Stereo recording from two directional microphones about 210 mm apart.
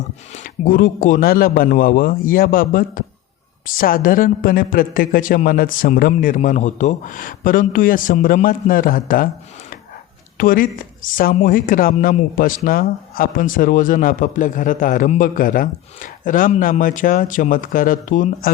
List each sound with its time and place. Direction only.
0.3 s speech: 40° left (ahead or behind)